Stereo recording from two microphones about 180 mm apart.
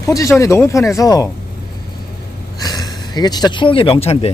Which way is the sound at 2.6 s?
20° left (ahead or behind).